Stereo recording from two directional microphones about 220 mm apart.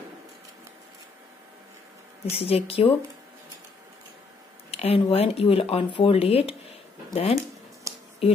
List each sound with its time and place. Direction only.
2.3 s speech: 25° left (ahead or behind)
4.6 s speech: 25° left (ahead or behind)
7.9 s a sound: 15° right (ahead or behind)